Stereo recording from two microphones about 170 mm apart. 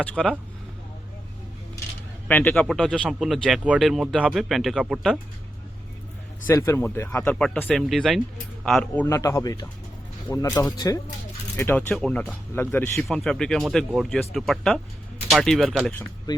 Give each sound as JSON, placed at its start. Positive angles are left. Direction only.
{"t": 0.0, "sound": "speech", "side_deg": 5}
{"t": 2.2, "sound": "speech", "side_deg": 10}
{"t": 6.4, "sound": "speech", "side_deg": 15}
{"t": 9.0, "sound": "speech", "side_deg": 20}